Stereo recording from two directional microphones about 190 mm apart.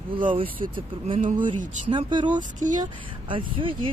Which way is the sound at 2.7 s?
25° right (ahead or behind).